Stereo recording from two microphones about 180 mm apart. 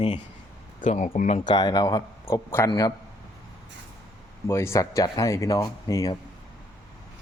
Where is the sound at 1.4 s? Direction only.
25° left (ahead or behind).